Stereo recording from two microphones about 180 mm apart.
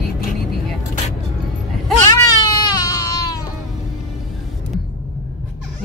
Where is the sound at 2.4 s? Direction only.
20° left (ahead or behind).